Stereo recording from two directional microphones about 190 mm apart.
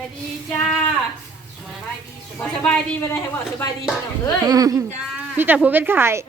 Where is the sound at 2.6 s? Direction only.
10° left (ahead or behind).